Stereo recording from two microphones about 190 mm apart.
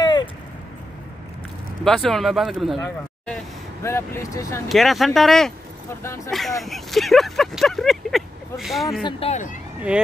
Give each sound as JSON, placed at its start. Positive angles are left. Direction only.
{"t": 0.0, "sound": "a sound", "side_deg": 25}
{"t": 1.9, "sound": "speech", "side_deg": 0}
{"t": 4.6, "sound": "speech", "side_deg": 0}
{"t": 6.0, "sound": "speech", "side_deg": 15}
{"t": 6.6, "sound": "speech", "side_deg": 0}
{"t": 9.0, "sound": "speech", "side_deg": 35}
{"t": 9.8, "sound": "speech", "side_deg": -5}